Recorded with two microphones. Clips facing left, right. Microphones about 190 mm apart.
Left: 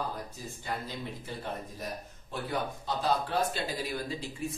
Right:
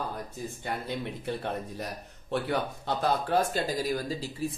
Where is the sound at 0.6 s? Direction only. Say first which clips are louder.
Right 3 dB; 65° right (ahead or behind).